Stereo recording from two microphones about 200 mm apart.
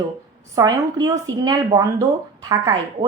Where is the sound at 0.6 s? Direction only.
15° right (ahead or behind).